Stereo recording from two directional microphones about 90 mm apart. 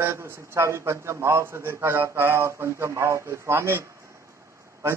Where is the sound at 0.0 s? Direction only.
30° right (ahead or behind).